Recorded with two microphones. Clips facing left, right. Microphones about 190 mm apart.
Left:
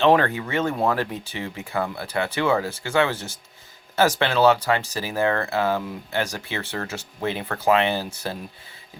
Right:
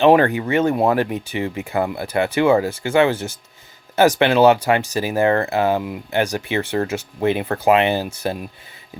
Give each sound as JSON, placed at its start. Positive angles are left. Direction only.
{"t": 0.0, "sound": "speech", "side_deg": -15}